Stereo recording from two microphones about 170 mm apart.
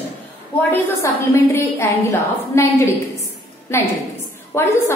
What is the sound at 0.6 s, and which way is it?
A woman's voice, 10° left (ahead or behind).